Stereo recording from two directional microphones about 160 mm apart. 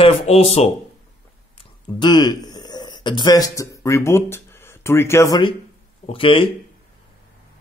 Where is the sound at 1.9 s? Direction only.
25° left (ahead or behind).